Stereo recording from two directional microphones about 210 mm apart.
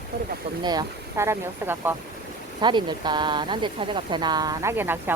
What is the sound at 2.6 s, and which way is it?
Speech, 20° right (ahead or behind).